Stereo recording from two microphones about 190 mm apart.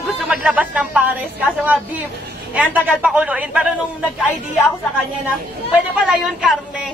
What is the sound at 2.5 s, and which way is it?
A woman's voice, 5° right (ahead or behind).